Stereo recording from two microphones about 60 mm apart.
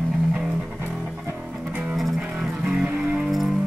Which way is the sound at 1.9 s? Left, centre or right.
Centre.